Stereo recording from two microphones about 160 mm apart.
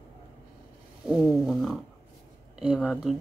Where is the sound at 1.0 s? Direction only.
5° right (ahead or behind).